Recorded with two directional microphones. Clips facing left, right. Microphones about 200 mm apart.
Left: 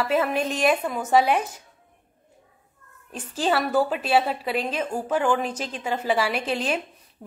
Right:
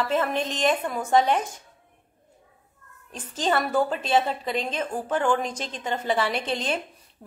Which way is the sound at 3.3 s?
10° left (ahead or behind).